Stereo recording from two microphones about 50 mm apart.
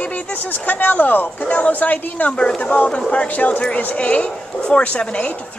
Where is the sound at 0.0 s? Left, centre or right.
Left.